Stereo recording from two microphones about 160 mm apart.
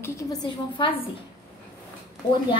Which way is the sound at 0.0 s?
20° left (ahead or behind).